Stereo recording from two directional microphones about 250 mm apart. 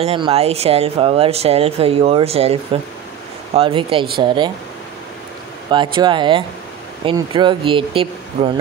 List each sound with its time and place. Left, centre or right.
0.0 s speech: right
5.7 s speech: centre